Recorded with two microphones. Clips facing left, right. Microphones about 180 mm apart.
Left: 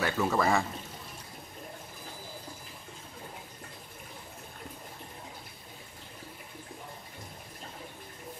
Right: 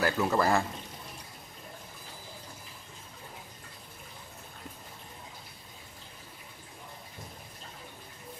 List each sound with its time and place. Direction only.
0.0 s speech: centre (ahead or behind)